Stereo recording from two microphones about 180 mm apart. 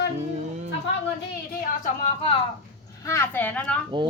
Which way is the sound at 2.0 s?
30° left (ahead or behind).